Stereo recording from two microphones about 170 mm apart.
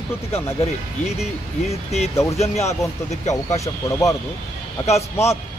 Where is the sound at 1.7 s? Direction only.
40° left (ahead or behind).